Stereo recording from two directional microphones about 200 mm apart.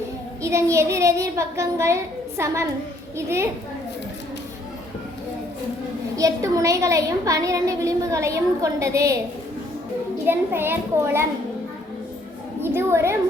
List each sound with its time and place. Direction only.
0.4 s a woman's voice: 15° right (ahead or behind)
6.1 s a woman's voice: 15° right (ahead or behind)
10.2 s a woman's voice: 10° right (ahead or behind)
12.6 s a woman's voice: 15° right (ahead or behind)